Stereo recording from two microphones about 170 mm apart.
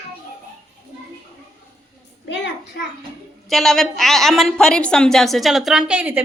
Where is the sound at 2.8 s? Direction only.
80° left.